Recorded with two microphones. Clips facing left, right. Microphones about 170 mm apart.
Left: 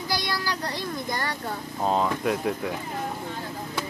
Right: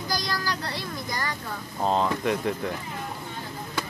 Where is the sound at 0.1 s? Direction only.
5° left (ahead or behind).